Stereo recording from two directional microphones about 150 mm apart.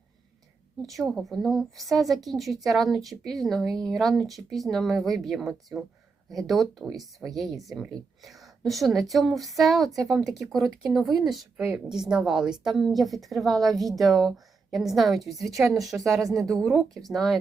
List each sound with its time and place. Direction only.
0.8 s a woman's voice: centre (ahead or behind)
16.4 s a woman's voice: 20° right (ahead or behind)
16.6 s a woman's voice: centre (ahead or behind)